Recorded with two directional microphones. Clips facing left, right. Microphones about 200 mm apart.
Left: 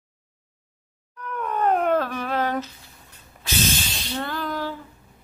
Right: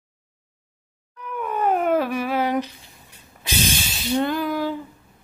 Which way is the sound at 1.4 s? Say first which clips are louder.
Even; 5° right (ahead or behind).